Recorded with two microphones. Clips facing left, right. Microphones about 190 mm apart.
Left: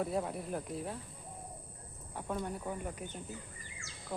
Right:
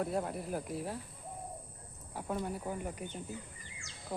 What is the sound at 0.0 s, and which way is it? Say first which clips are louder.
Speech: even; centre (ahead or behind).